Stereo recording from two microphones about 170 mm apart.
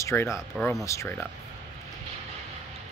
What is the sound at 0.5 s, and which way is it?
Speech, centre (ahead or behind).